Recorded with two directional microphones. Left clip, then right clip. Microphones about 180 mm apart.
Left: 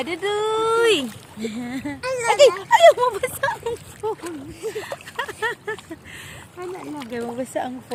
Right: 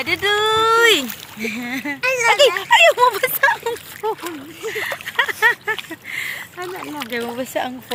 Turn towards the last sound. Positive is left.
turn(degrees=-15)  # may be behind; listen again after turning